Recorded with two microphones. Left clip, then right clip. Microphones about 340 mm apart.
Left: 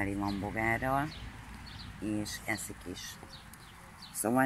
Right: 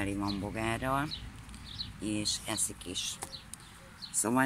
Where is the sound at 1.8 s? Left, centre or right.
Right.